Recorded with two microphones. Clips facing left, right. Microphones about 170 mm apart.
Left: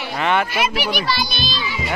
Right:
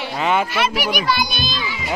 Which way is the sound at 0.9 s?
45° right (ahead or behind).